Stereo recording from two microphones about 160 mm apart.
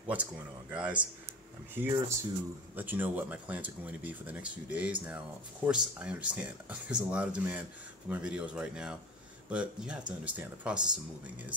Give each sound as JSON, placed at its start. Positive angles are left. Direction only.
{"t": 0.0, "sound": "speech", "side_deg": -10}